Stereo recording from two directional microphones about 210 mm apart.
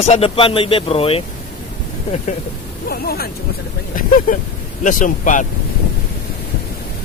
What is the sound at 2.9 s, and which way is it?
Speech, 45° left (ahead or behind).